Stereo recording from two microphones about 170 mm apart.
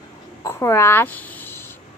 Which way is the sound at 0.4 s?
15° left (ahead or behind).